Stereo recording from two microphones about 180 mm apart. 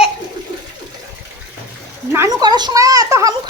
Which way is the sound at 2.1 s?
20° right (ahead or behind).